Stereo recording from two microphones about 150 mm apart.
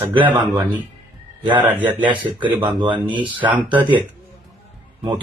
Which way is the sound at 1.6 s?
10° right (ahead or behind).